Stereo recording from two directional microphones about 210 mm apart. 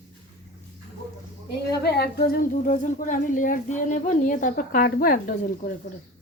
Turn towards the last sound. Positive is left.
turn(degrees=40)  # may be behind; listen again after turning